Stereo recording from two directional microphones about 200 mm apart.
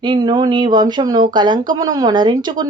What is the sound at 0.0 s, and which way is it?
Speech, 20° right (ahead or behind).